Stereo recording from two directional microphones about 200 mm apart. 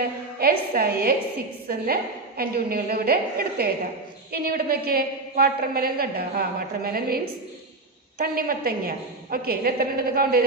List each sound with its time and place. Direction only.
0.4 s a woman's voice: 50° right (ahead or behind)
8.2 s a woman's voice: 50° right (ahead or behind)